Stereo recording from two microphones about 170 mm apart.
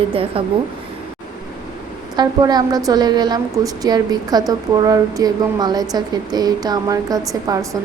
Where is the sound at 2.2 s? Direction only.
25° right (ahead or behind).